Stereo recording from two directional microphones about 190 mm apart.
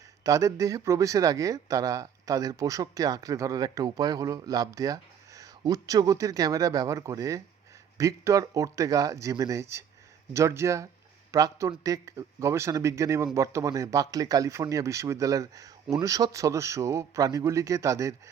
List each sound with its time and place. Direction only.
0.3 s speech: 15° right (ahead or behind)